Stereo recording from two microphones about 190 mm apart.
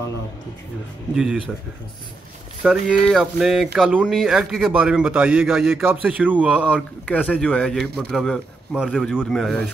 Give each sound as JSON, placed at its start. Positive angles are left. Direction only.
{"t": 1.1, "sound": "speech", "side_deg": -5}
{"t": 2.6, "sound": "speech", "side_deg": -5}
{"t": 6.6, "sound": "speech", "side_deg": 5}